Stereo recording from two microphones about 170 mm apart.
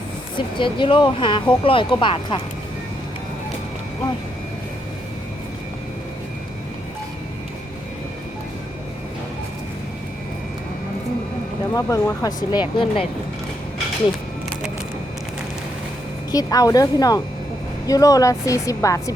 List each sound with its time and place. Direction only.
0.3 s speech: 30° left (ahead or behind)
11.7 s speech: 20° left (ahead or behind)
16.3 s speech: 20° left (ahead or behind)